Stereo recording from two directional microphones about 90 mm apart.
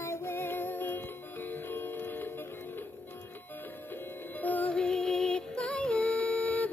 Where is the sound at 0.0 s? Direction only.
30° left (ahead or behind).